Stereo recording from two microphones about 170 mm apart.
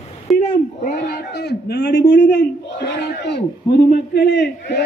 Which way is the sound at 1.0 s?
65° left (ahead or behind).